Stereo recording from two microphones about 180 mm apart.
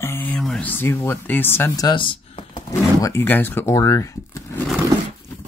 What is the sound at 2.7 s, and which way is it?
Speech, 15° left (ahead or behind).